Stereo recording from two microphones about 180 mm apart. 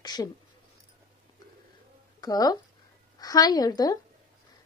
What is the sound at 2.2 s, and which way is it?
Speech, 20° left (ahead or behind).